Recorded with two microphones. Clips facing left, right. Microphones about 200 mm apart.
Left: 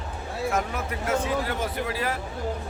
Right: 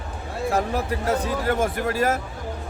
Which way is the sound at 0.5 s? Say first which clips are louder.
Right 4 dB; 35° right (ahead or behind).